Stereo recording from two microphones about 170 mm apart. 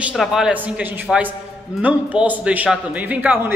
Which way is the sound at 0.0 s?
Centre (ahead or behind).